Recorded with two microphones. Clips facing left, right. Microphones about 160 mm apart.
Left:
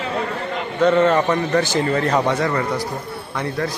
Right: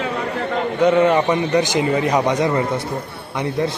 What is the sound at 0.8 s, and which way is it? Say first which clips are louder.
A man's voice: even; 15° right (ahead or behind).